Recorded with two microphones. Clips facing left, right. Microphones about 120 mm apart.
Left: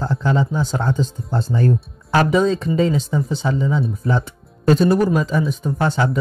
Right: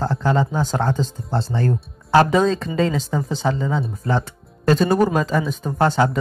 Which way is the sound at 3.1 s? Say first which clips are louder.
Left 1 dB; 40° right (ahead or behind).